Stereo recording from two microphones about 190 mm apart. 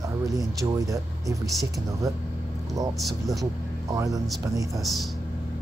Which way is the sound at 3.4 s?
20° right (ahead or behind).